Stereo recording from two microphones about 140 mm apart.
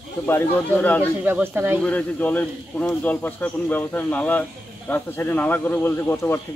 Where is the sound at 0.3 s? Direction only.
15° left (ahead or behind).